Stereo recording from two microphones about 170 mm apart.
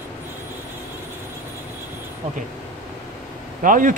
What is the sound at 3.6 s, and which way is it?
Speech, 50° right (ahead or behind).